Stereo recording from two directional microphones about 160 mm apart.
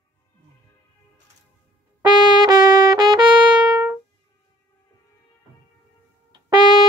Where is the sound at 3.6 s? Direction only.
10° right (ahead or behind).